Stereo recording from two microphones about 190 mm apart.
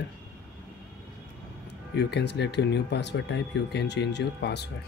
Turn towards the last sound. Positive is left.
turn(degrees=60)  # may be behind; listen again after turning